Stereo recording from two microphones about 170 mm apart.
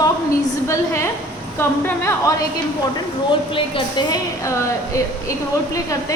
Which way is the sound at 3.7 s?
20° left (ahead or behind).